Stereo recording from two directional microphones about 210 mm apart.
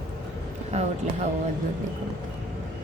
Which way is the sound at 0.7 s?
30° right (ahead or behind).